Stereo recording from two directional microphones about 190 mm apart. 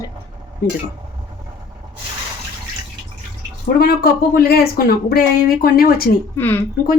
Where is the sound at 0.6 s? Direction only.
50° left (ahead or behind).